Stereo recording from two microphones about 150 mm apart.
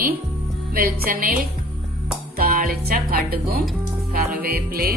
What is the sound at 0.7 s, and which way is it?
Speech, 75° right (ahead or behind).